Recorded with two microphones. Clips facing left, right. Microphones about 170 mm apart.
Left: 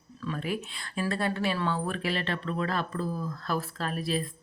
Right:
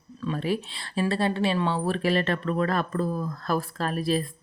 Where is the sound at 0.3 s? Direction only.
30° right (ahead or behind).